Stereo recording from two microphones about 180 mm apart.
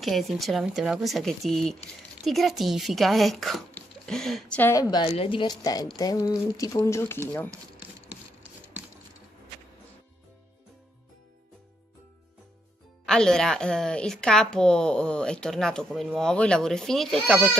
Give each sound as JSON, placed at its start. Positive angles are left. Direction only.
{"t": 0.0, "sound": "speech", "side_deg": 0}
{"t": 5.0, "sound": "speech", "side_deg": 35}
{"t": 13.0, "sound": "speech", "side_deg": 5}